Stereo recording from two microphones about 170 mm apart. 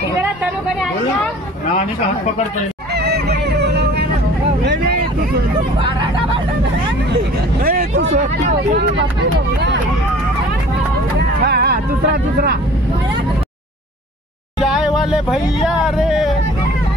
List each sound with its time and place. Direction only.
2.9 s music: 70° right (ahead or behind)
5.8 s speech: 30° right (ahead or behind)
7.6 s vehicle: 60° right (ahead or behind)
11.4 s a sound: 70° right (ahead or behind)
14.6 s speech: centre (ahead or behind)